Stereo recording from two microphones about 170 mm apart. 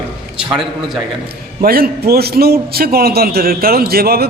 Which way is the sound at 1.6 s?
65° right (ahead or behind).